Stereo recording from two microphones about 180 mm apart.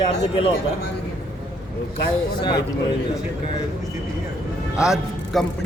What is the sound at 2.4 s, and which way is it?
Speech, 25° left (ahead or behind).